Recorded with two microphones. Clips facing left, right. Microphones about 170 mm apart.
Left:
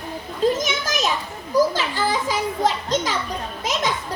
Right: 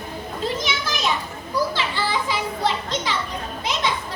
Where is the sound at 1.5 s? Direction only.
45° left (ahead or behind).